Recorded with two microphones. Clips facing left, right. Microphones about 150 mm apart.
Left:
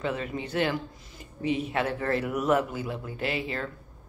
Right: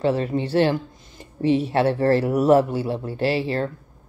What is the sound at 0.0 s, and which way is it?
Speech, 35° right (ahead or behind).